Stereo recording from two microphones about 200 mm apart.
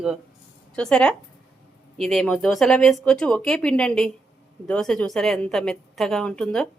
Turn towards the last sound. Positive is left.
turn(degrees=5)  # may be behind; listen again after turning